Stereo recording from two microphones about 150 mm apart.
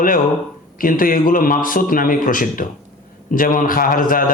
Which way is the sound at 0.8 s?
70° left (ahead or behind).